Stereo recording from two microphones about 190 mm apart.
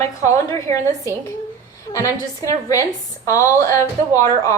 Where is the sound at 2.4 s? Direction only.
20° left (ahead or behind).